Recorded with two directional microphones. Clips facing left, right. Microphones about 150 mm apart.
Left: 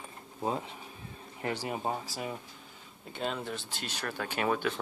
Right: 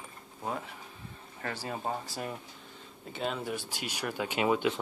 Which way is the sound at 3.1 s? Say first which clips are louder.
Right 1 dB; centre (ahead or behind).